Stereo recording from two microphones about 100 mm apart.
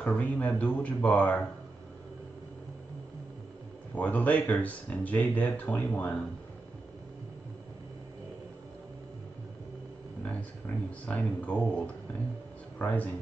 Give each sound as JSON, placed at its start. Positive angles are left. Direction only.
{"t": 0.0, "sound": "speech", "side_deg": 15}
{"t": 3.9, "sound": "speech", "side_deg": 15}
{"t": 11.1, "sound": "speech", "side_deg": 15}